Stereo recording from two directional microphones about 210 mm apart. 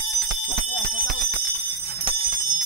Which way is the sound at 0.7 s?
40° right (ahead or behind).